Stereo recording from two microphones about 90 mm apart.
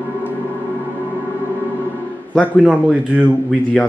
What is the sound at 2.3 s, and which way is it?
Speech, 15° left (ahead or behind).